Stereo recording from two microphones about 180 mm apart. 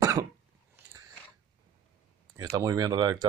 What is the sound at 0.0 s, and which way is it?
Cough, 20° right (ahead or behind).